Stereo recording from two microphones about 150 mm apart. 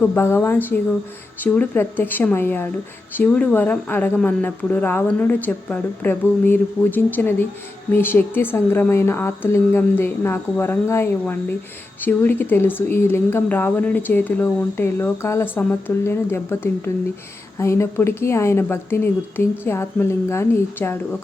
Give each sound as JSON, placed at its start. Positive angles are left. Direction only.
{"t": 0.0, "sound": "speech", "side_deg": 15}